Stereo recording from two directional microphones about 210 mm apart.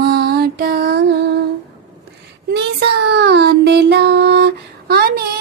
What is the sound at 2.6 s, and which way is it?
Child singing, 55° right (ahead or behind).